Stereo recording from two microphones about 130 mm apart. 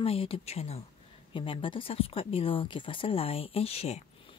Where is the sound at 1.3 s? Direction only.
40° left (ahead or behind).